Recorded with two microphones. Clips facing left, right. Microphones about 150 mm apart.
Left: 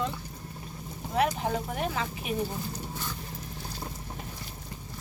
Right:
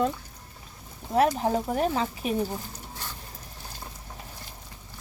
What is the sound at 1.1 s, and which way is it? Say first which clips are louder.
Speech: right 5 dB; 40° right (ahead or behind).